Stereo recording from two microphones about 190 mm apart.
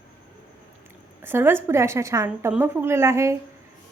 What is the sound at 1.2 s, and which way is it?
A woman's voice, 10° right (ahead or behind).